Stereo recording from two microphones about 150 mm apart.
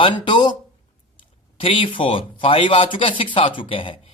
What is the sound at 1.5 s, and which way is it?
Speech, 35° left (ahead or behind).